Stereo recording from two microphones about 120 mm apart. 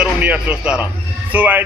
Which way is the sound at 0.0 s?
10° right (ahead or behind).